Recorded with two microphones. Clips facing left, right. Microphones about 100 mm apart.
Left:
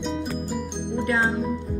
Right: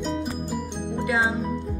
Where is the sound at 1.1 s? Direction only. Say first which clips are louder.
Even; 5° right (ahead or behind).